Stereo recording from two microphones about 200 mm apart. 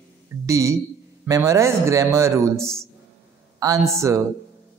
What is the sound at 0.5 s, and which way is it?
A man's voice, 15° right (ahead or behind).